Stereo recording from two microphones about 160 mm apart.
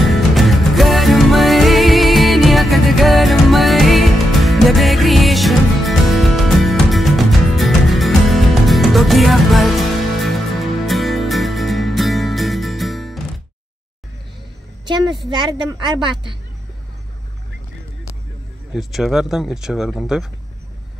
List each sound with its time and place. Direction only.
0.1 s music: centre (ahead or behind)
14.9 s a woman's voice: 30° right (ahead or behind)
18.7 s speech: centre (ahead or behind)